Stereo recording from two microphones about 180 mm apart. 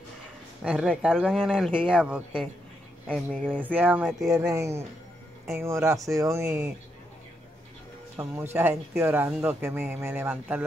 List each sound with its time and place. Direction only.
0.7 s speech: 5° right (ahead or behind)
3.1 s speech: 5° left (ahead or behind)
3.4 s speech: 10° right (ahead or behind)
8.2 s speech: 15° right (ahead or behind)